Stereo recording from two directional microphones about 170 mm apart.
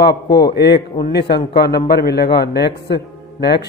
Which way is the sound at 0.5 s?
75° left (ahead or behind).